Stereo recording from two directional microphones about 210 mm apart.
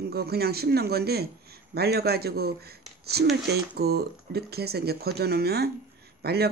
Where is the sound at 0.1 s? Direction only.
50° right (ahead or behind).